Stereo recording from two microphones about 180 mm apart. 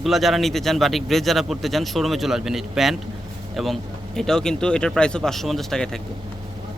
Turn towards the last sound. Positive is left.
turn(degrees=5)  # may be behind; listen again after turning